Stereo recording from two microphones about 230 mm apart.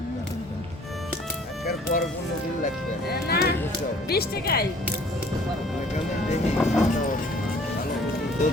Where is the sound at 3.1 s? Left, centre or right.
Left.